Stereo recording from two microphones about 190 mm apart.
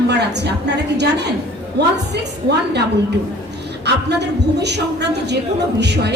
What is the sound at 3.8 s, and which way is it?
A woman's voice, 60° right (ahead or behind).